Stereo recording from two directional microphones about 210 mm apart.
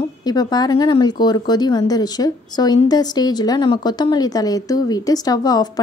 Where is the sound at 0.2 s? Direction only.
20° left (ahead or behind).